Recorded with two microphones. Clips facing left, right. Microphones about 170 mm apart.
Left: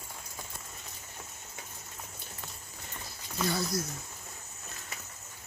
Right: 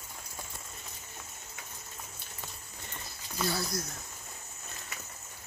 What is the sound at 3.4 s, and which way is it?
Speech, centre (ahead or behind).